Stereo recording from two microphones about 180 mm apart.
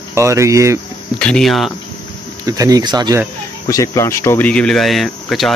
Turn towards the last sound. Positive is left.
turn(degrees=0)  # may be behind; listen again after turning